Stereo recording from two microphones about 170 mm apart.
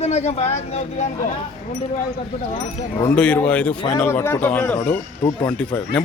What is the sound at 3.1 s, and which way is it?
A man's voice, 5° left (ahead or behind).